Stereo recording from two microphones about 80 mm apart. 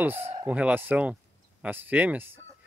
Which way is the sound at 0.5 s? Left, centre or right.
Centre.